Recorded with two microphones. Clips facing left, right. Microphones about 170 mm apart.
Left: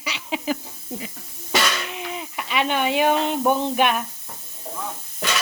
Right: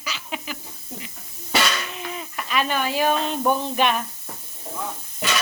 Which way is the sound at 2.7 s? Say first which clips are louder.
Left 3 dB; 20° left (ahead or behind).